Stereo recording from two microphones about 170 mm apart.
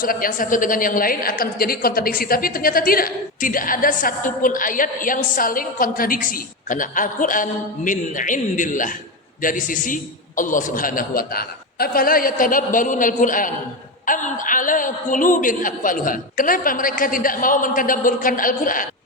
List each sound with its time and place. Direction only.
0.0 s a woman's voice: 55° left (ahead or behind)